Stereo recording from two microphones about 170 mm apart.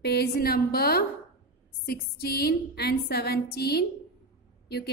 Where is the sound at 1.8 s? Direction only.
65° left (ahead or behind).